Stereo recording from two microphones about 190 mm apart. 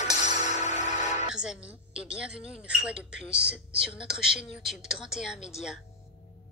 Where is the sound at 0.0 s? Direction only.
40° left (ahead or behind).